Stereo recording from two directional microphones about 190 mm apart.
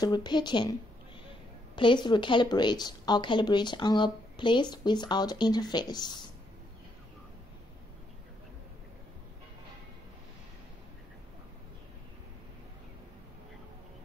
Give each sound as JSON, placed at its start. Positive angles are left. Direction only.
{"t": 0.0, "sound": "a woman's voice", "side_deg": 20}
{"t": 1.8, "sound": "a woman's voice", "side_deg": 25}